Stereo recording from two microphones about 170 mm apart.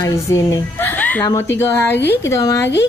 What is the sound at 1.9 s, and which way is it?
Speech, 80° left.